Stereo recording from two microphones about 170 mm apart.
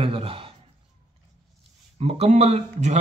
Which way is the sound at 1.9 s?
35° right (ahead or behind).